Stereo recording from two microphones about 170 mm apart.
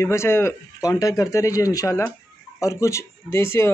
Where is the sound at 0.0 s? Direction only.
15° left (ahead or behind).